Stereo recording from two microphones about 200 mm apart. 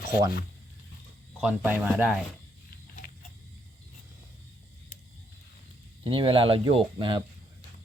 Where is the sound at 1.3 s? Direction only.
5° right (ahead or behind).